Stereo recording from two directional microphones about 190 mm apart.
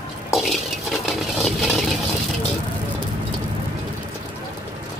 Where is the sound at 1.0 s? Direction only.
Centre (ahead or behind).